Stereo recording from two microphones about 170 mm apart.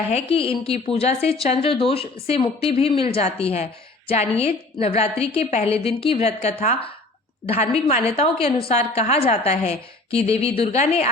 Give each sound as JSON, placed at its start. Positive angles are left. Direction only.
{"t": 0.1, "sound": "a woman's voice", "side_deg": 35}